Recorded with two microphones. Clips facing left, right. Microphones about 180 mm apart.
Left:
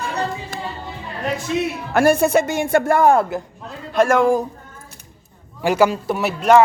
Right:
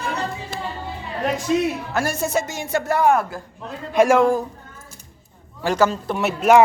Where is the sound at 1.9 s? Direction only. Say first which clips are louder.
Left 13 dB; 60° left (ahead or behind).